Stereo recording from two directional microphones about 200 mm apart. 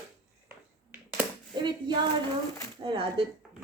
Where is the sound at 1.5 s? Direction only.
25° right (ahead or behind).